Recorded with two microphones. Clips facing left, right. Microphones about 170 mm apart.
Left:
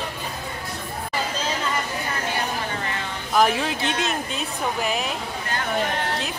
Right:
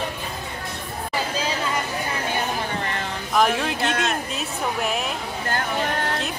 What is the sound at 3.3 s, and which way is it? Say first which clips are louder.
Speech: left 1 dB; centre (ahead or behind).